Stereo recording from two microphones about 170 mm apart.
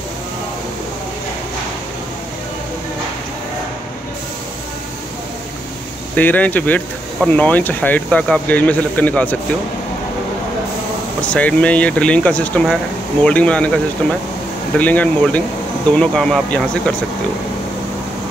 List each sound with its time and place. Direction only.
6.1 s speech: 10° left (ahead or behind)
11.1 s speech: 5° left (ahead or behind)